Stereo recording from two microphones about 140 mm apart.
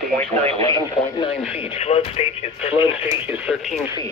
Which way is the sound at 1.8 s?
45° left (ahead or behind).